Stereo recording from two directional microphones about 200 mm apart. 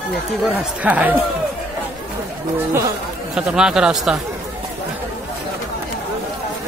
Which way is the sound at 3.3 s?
5° right (ahead or behind).